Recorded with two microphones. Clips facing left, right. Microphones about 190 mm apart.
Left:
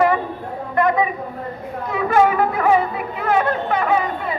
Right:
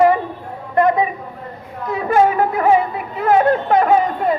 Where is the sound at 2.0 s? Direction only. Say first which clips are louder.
Right 1 dB; 40° right (ahead or behind).